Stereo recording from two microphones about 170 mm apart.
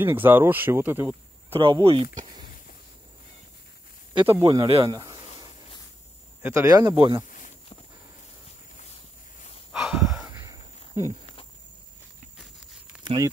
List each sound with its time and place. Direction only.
0.0 s speech: 10° right (ahead or behind)
1.5 s speech: 30° right (ahead or behind)
4.1 s speech: 30° right (ahead or behind)
4.6 s a sound: 30° right (ahead or behind)
6.4 s speech: 15° right (ahead or behind)
7.2 s walk: 50° left (ahead or behind)
9.7 s a sound: centre (ahead or behind)
10.1 s a sound: 15° right (ahead or behind)
12.4 s horse: 5° right (ahead or behind)
13.0 s speech: 25° right (ahead or behind)